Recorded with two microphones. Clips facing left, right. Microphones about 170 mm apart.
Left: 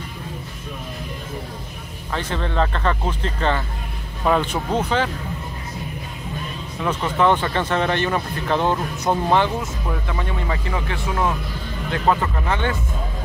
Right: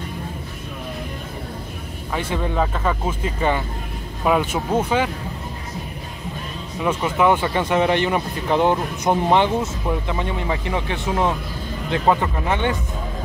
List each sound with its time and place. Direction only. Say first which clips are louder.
2.1 s speech: right 1 dB; 10° right (ahead or behind)
6.8 s speech: right 1 dB; 10° right (ahead or behind)